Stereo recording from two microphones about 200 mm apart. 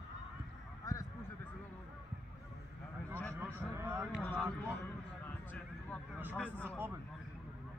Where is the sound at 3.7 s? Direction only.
10° right (ahead or behind).